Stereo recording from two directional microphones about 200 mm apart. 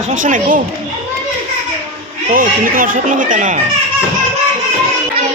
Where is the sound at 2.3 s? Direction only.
45° right (ahead or behind).